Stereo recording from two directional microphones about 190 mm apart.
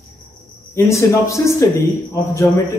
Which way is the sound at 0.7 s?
15° left (ahead or behind).